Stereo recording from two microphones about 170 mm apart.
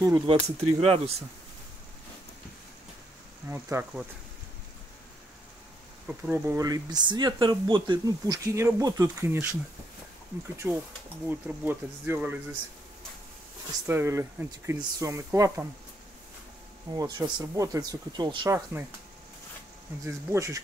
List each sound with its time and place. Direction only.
0.0 s speech: 20° right (ahead or behind)
0.6 s speech: 35° right (ahead or behind)
3.4 s speech: 15° right (ahead or behind)
6.0 s speech: 10° right (ahead or behind); by 8.4 s 30° right (ahead or behind)
8.5 s speech: 15° right (ahead or behind)
10.6 s speech: 10° right (ahead or behind)
13.8 s speech: 15° right (ahead or behind)
16.9 s speech: 20° right (ahead or behind)
20.1 s speech: 15° right (ahead or behind)